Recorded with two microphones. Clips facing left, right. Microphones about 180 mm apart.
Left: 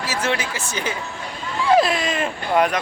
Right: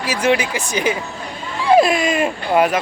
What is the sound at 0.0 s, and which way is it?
A man's voice, 15° right (ahead or behind).